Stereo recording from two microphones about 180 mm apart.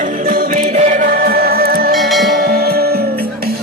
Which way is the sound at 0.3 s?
50° right (ahead or behind).